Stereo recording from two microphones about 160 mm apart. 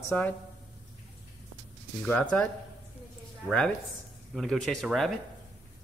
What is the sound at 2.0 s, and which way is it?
Speech, 10° left (ahead or behind).